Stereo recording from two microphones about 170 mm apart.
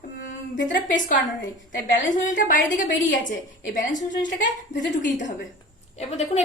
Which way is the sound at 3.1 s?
90° left.